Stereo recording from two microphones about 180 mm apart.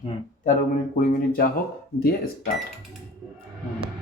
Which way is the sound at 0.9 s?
55° left (ahead or behind).